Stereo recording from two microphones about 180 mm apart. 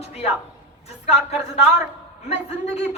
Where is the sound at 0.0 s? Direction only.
35° left (ahead or behind).